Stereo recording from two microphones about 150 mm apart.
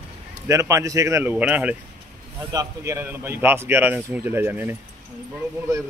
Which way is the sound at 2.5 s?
20° right (ahead or behind).